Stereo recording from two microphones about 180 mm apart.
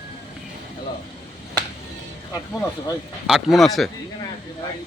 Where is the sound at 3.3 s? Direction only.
Centre (ahead or behind).